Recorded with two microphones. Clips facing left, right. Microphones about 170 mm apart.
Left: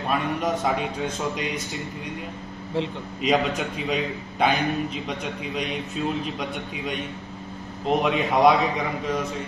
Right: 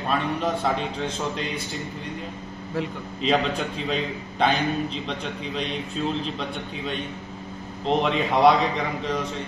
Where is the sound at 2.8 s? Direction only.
25° left (ahead or behind).